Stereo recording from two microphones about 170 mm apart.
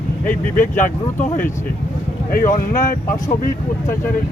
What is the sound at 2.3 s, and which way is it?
Speech, 50° left (ahead or behind).